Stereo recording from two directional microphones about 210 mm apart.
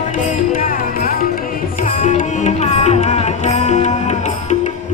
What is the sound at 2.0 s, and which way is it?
Music, 35° left (ahead or behind).